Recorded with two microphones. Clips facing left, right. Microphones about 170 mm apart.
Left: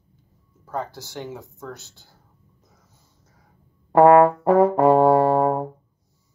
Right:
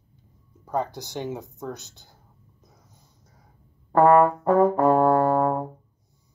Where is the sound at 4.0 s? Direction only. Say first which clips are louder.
Left 4 dB; 85° left.